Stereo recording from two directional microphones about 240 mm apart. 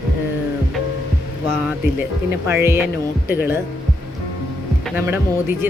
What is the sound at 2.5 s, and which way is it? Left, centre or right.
Speech, centre.